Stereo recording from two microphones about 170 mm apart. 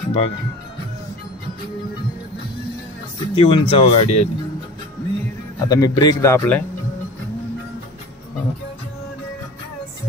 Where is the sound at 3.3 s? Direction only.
30° left (ahead or behind).